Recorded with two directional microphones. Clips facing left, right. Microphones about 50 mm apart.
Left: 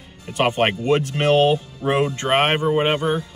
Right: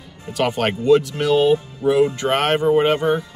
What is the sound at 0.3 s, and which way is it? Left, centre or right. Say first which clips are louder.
Speech: left 1 dB; left.